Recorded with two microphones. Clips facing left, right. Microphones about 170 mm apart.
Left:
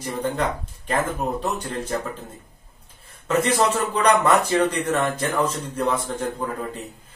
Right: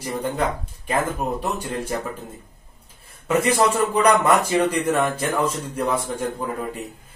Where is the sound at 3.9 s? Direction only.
10° right (ahead or behind).